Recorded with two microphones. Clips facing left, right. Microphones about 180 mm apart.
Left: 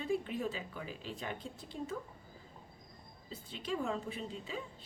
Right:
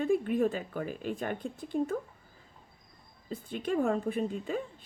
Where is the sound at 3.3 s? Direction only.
55° right (ahead or behind).